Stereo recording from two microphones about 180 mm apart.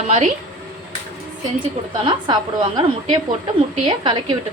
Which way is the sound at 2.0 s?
25° right (ahead or behind).